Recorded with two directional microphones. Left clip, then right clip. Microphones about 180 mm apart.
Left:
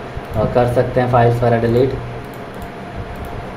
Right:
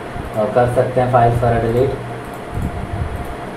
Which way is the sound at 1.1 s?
40° left (ahead or behind).